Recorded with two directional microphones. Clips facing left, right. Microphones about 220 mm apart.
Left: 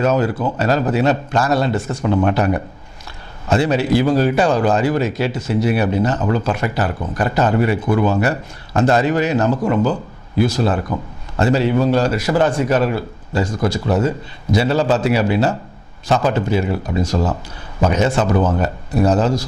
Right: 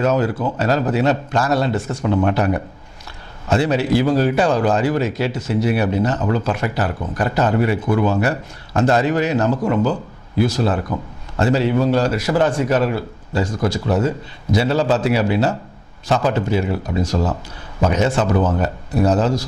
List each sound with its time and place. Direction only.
0.0 s a man's voice: 10° left (ahead or behind)
17.2 s speech: 25° left (ahead or behind)
17.8 s a man's voice: 10° left (ahead or behind)
18.3 s speech: 25° left (ahead or behind)
18.6 s a man's voice: 10° left (ahead or behind)